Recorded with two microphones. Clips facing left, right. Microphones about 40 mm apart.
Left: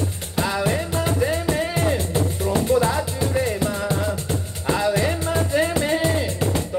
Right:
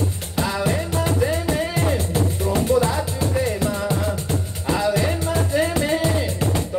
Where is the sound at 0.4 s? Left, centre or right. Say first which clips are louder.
Even; centre.